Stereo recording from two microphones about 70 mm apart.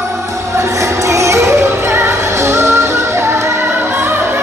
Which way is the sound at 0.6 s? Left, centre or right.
Right.